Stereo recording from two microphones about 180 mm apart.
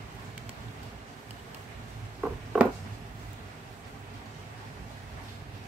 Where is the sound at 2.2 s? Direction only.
5° right (ahead or behind).